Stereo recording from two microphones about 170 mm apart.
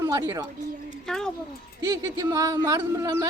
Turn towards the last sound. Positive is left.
turn(degrees=-20)  # may be behind; listen again after turning